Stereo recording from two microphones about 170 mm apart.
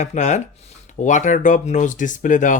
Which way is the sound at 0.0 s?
45° left (ahead or behind).